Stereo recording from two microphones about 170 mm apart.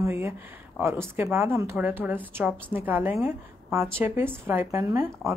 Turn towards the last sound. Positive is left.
turn(degrees=-15)  # may be behind; listen again after turning